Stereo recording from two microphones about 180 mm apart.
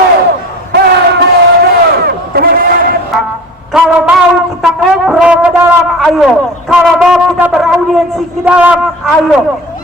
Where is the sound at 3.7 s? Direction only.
5° right (ahead or behind).